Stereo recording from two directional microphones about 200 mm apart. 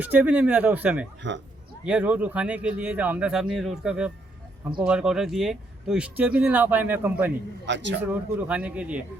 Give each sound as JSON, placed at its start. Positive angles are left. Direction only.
{"t": 0.0, "sound": "speech", "side_deg": -5}
{"t": 1.2, "sound": "a man's voice", "side_deg": -65}
{"t": 1.8, "sound": "speech", "side_deg": -5}
{"t": 7.7, "sound": "a man's voice", "side_deg": -65}
{"t": 8.0, "sound": "speech", "side_deg": -10}